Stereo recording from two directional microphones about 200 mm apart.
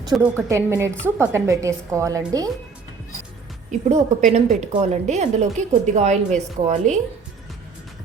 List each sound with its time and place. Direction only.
0.1 s a woman's voice: 5° right (ahead or behind)
3.7 s a woman's voice: 35° right (ahead or behind)